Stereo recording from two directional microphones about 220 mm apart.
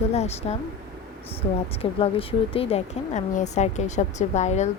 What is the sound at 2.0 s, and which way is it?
Speech, 25° left (ahead or behind).